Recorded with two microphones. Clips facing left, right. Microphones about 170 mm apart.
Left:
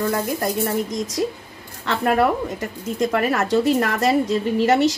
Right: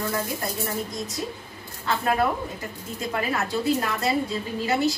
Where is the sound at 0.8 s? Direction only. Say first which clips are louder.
Left 8 dB; 90° left.